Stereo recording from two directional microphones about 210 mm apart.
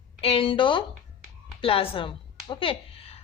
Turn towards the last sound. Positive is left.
turn(degrees=30)  # may be behind; listen again after turning